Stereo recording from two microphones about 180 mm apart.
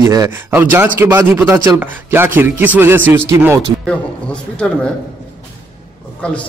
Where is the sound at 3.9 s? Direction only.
5° left (ahead or behind).